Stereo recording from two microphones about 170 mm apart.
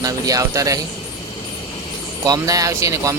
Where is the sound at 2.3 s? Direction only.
20° right (ahead or behind).